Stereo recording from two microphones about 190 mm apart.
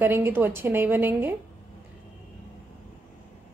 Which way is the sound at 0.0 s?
10° right (ahead or behind).